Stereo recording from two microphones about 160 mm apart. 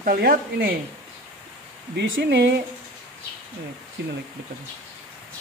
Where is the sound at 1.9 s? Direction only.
90° right.